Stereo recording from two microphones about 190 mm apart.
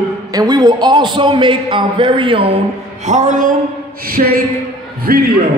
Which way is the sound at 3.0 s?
40° right (ahead or behind).